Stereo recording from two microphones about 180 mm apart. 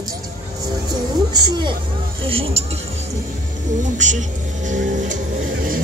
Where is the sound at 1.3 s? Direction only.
25° right (ahead or behind).